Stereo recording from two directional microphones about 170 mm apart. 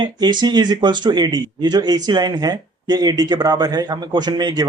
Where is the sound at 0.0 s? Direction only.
25° right (ahead or behind).